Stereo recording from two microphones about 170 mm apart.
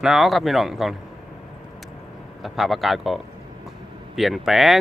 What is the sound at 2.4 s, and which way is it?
Speech, centre (ahead or behind).